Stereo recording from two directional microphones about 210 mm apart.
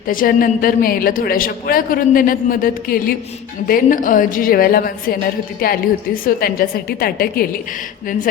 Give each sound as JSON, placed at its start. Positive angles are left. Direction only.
{"t": 0.1, "sound": "a woman's voice", "side_deg": 40}